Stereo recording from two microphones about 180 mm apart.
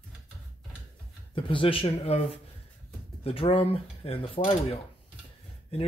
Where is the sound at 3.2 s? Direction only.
30° left (ahead or behind).